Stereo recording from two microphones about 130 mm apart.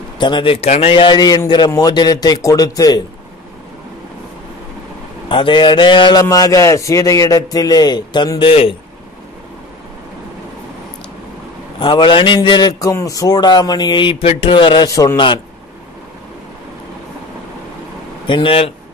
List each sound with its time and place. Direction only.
0.2 s a man's voice: 40° left (ahead or behind)
5.3 s a man's voice: 40° left (ahead or behind)
6.2 s a man's voice: 25° left (ahead or behind); by 8.7 s 45° left (ahead or behind)
11.8 s a man's voice: 40° left (ahead or behind)
14.2 s a man's voice: 50° left (ahead or behind)
18.2 s speech: 40° left (ahead or behind)